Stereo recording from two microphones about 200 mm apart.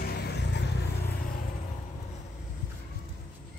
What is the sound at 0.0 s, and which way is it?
Vehicle, 50° left (ahead or behind).